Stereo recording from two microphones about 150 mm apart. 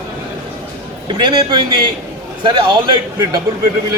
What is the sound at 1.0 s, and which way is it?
A man's voice, 30° right (ahead or behind).